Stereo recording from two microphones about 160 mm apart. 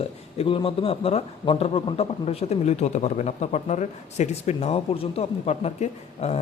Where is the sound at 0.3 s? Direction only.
35° left (ahead or behind).